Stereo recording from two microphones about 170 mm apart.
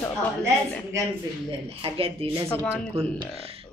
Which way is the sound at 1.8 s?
35° right (ahead or behind).